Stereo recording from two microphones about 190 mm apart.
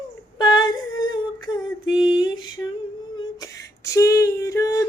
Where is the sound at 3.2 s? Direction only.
20° left (ahead or behind).